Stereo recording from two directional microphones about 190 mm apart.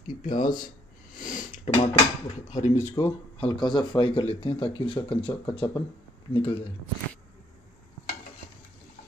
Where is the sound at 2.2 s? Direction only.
40° left (ahead or behind).